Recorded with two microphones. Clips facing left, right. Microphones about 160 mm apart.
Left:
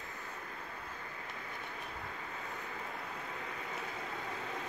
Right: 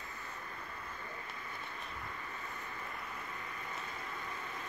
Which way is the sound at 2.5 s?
80° left.